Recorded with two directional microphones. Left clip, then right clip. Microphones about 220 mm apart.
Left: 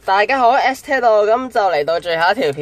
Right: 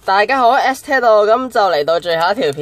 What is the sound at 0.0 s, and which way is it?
Speech, 10° right (ahead or behind).